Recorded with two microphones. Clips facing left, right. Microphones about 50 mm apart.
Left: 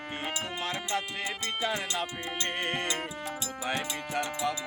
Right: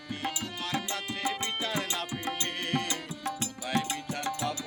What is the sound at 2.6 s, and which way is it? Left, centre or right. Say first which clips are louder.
Music: left 1 dB; left.